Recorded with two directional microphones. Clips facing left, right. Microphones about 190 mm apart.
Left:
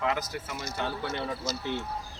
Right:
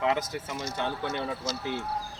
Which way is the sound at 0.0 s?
25° right (ahead or behind).